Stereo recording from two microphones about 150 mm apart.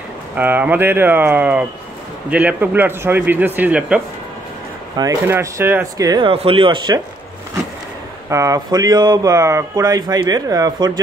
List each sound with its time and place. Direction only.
0.4 s a man's voice: 15° right (ahead or behind)
5.2 s a man's voice: 15° right (ahead or behind)
6.3 s speech: 35° right (ahead or behind)
8.3 s speech: 20° right (ahead or behind)